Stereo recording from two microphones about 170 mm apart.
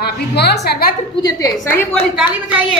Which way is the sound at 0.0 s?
70° left (ahead or behind).